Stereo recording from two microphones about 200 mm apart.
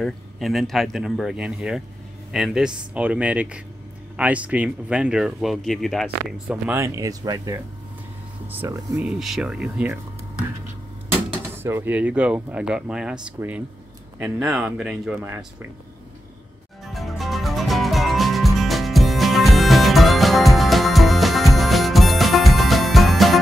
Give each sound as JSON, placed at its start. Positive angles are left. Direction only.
{"t": 0.0, "sound": "speech", "side_deg": 0}
{"t": 9.0, "sound": "speech", "side_deg": 0}
{"t": 11.5, "sound": "speech", "side_deg": -10}
{"t": 16.8, "sound": "music", "side_deg": 0}